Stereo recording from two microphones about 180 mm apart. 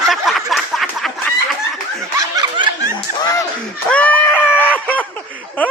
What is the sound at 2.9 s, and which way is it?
Speech, 20° left (ahead or behind).